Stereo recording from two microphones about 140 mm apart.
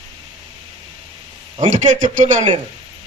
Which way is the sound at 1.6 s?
60° right (ahead or behind).